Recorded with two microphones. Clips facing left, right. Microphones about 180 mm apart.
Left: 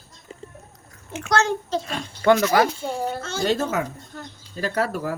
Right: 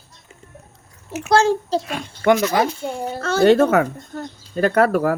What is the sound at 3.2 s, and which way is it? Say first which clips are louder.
Speech: right 13 dB; 60° right (ahead or behind).